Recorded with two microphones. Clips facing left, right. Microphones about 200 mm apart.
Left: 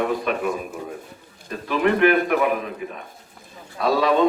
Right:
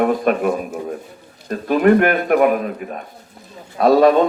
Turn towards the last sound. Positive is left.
turn(degrees=-50)  # may be behind; listen again after turning